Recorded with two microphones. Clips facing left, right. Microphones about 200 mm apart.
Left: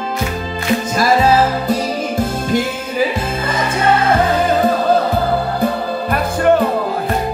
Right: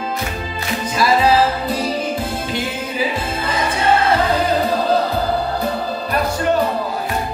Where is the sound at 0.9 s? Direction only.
45° left (ahead or behind).